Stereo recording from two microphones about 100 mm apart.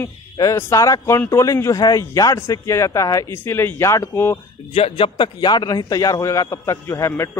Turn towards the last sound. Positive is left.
turn(degrees=30)  # may be behind; listen again after turning